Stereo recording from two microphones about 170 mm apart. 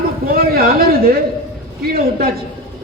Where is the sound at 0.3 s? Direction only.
60° right (ahead or behind).